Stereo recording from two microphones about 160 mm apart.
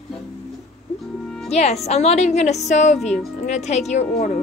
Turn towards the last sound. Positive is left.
turn(degrees=45)  # may be behind; listen again after turning